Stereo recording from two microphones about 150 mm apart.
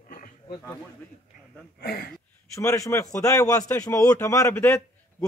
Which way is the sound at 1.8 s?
90° left.